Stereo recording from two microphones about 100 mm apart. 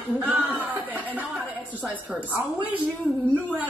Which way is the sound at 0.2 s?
15° right (ahead or behind).